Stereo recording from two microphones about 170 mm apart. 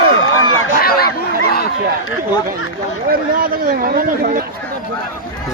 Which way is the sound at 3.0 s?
55° right (ahead or behind).